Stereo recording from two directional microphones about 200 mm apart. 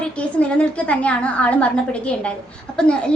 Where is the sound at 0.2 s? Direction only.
5° left (ahead or behind).